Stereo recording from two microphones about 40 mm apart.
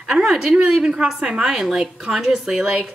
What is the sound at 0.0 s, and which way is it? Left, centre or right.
Speech, centre.